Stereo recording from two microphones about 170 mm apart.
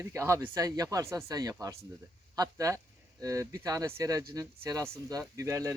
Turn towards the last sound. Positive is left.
turn(degrees=-15)  # may be behind; listen again after turning